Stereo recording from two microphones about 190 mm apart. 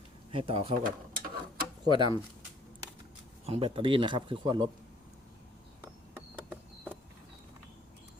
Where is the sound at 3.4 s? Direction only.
30° right (ahead or behind).